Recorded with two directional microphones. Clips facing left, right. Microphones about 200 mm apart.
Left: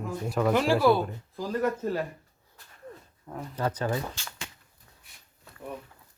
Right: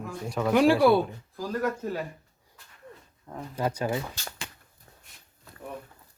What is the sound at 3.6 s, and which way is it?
Speech, 10° right (ahead or behind).